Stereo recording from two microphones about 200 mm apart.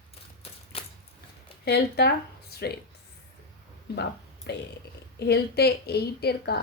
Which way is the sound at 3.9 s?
55° left (ahead or behind).